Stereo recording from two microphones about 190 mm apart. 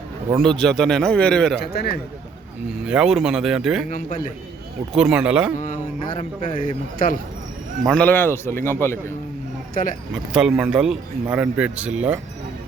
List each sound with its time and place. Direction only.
0.4 s speech: 5° left (ahead or behind)
1.7 s speech: 55° left (ahead or behind)
2.8 s speech: 5° right (ahead or behind)
3.8 s mantra: 40° left (ahead or behind)
4.9 s speech: 5° right (ahead or behind)
5.5 s mantra: 40° left (ahead or behind)
6.5 s speech: 45° left (ahead or behind)
7.9 s speech: 5° left (ahead or behind)
9.8 s speech: 45° left (ahead or behind)
10.1 s speech: 5° right (ahead or behind)